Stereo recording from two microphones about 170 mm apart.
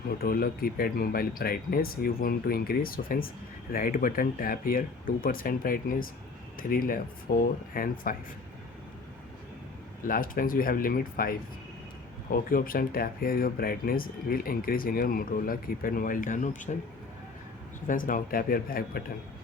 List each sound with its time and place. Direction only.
0.2 s speech: 60° left (ahead or behind)
10.1 s speech: 55° left (ahead or behind)
17.8 s speech: 55° left (ahead or behind)